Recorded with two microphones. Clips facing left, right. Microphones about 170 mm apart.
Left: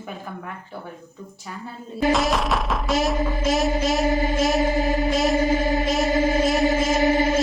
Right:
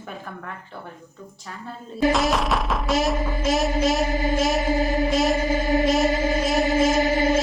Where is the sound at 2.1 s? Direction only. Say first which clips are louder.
Left 1 dB; centre (ahead or behind).